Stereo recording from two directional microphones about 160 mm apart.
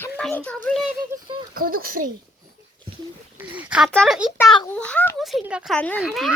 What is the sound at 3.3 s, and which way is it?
Speech, 10° right (ahead or behind).